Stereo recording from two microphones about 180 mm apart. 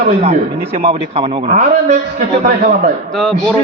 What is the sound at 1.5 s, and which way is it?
A man's voice, 50° right (ahead or behind).